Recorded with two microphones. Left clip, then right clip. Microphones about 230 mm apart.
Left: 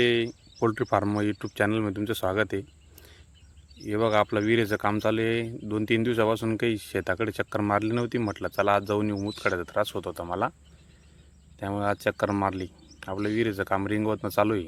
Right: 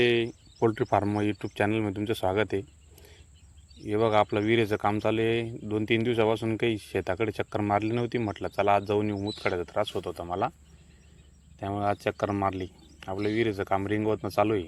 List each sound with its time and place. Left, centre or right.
0.0 s speech: centre
11.6 s speech: centre